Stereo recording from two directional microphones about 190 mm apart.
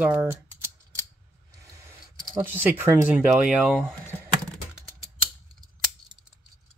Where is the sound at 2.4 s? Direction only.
10° right (ahead or behind).